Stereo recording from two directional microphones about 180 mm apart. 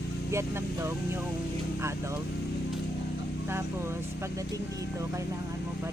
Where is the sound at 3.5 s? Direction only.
15° right (ahead or behind).